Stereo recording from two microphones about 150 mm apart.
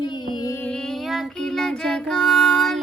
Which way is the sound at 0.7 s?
5° left (ahead or behind).